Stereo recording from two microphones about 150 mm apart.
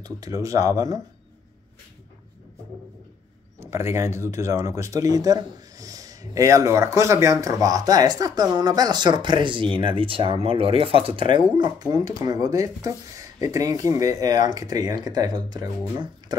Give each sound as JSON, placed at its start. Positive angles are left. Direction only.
{"t": 0.0, "sound": "speech", "side_deg": -25}
{"t": 3.5, "sound": "speech", "side_deg": -20}